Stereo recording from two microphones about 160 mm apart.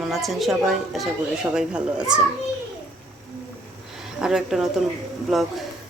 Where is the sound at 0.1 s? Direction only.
Centre (ahead or behind).